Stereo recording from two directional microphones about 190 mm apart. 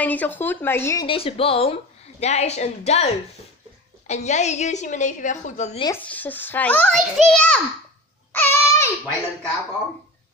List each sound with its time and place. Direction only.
0.0 s a child's voice: 10° left (ahead or behind)
1.0 s a woman's voice: 30° left (ahead or behind)
6.0 s a child's voice: 10° left (ahead or behind)
8.3 s a sound: 10° left (ahead or behind)